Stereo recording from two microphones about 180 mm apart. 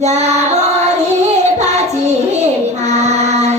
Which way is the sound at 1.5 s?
40° right (ahead or behind).